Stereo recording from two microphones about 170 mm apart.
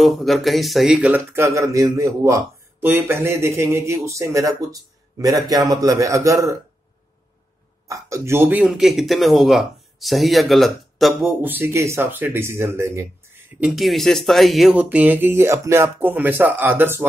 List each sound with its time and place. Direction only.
0.0 s speech: centre (ahead or behind); by 6.6 s 20° right (ahead or behind)
7.9 s speech: 15° right (ahead or behind); by 11.3 s centre (ahead or behind)
11.4 s speech: 10° right (ahead or behind)
13.6 s speech: 5° right (ahead or behind)